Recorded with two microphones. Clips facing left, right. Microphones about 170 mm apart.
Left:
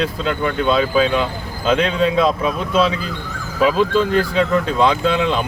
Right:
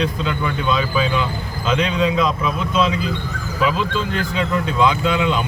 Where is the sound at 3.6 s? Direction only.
40° left (ahead or behind).